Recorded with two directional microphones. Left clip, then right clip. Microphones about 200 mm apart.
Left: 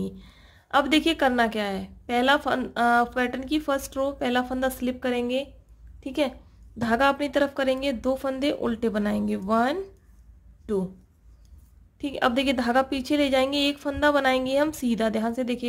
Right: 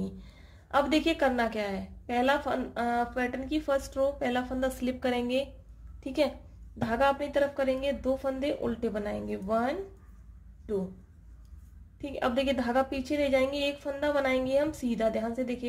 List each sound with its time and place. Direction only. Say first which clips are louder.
0.0 s a woman's voice: left 5 dB; 25° left (ahead or behind)
6.8 s a woman's voice: left 4 dB; 30° left (ahead or behind)
12.0 s a woman's voice: left 5 dB; 30° left (ahead or behind)